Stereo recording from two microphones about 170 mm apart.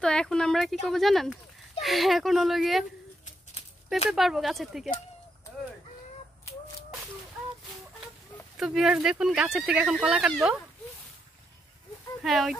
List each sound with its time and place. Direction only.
0.0 s speech: 5° left (ahead or behind)
4.1 s speech: centre (ahead or behind)
8.5 s speech: centre (ahead or behind)
12.2 s speech: centre (ahead or behind)